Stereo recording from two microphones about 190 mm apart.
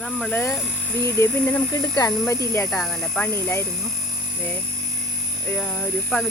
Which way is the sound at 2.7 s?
Centre (ahead or behind).